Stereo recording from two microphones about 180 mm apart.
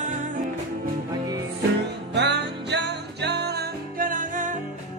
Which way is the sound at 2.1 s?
75° right (ahead or behind).